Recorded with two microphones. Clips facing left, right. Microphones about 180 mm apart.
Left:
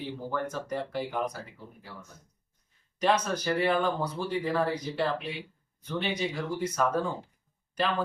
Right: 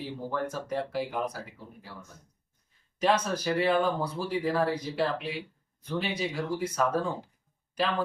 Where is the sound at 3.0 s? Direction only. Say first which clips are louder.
Even; 5° right (ahead or behind).